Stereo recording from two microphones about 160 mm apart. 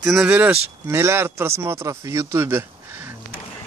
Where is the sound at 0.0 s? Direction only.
5° right (ahead or behind).